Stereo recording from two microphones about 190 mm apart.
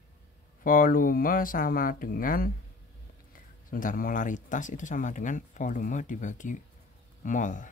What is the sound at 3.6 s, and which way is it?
Speech, 45° left (ahead or behind).